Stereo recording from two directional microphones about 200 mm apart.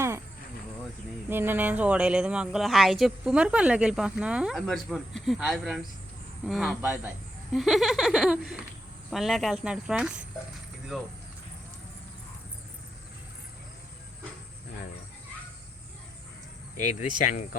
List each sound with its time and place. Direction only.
1.3 s a woman's voice: 10° right (ahead or behind)
16.8 s speech: 35° left (ahead or behind)